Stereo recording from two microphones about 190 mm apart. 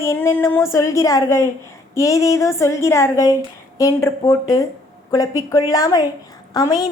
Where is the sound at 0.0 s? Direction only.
15° left (ahead or behind).